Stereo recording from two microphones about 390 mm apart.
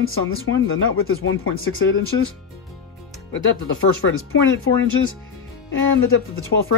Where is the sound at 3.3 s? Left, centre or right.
Left.